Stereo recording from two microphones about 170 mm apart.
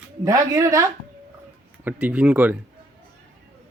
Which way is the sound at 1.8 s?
10° right (ahead or behind).